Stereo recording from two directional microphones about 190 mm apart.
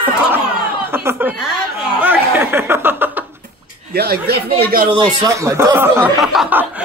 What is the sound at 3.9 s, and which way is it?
Speech, 55° right (ahead or behind).